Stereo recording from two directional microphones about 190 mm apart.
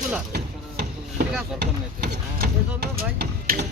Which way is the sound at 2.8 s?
55° right (ahead or behind).